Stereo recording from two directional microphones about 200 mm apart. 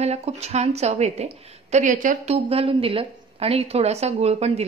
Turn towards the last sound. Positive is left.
turn(degrees=-30)  # may be behind; listen again after turning